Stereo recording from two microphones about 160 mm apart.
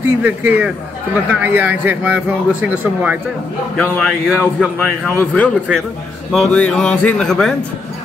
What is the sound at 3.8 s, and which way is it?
A man's voice, 5° left (ahead or behind).